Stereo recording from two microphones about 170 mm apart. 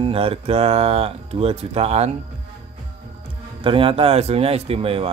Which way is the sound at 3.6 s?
30° right (ahead or behind).